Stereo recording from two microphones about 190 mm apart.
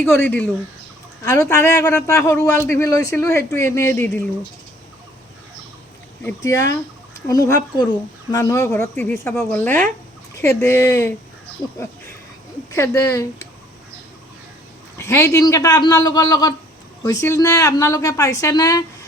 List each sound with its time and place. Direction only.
0.0 s a woman's voice: 10° left (ahead or behind)
6.2 s a woman's voice: 15° left (ahead or behind)
14.9 s a man's voice: 15° left (ahead or behind)